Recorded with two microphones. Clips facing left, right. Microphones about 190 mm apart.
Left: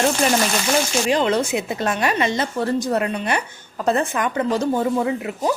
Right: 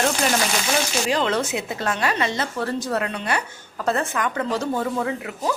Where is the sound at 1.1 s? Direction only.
15° left (ahead or behind).